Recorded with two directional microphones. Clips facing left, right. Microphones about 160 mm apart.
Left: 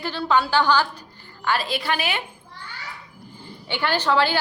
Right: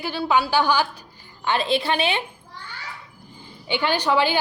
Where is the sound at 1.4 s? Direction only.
20° right (ahead or behind).